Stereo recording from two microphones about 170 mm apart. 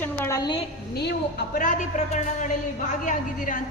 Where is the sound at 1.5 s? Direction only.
50° left (ahead or behind).